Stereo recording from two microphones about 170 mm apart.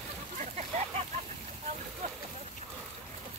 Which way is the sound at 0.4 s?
40° right (ahead or behind).